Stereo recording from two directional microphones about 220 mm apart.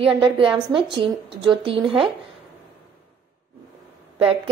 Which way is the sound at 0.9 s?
20° right (ahead or behind).